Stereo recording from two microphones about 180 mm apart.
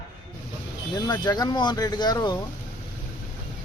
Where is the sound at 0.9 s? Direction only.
20° left (ahead or behind).